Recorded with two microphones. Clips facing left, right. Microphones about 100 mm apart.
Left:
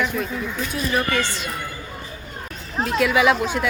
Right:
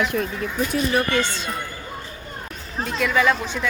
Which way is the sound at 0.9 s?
20° right (ahead or behind).